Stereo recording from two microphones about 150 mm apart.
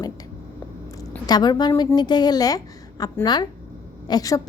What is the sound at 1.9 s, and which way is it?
A woman's voice, 30° left (ahead or behind).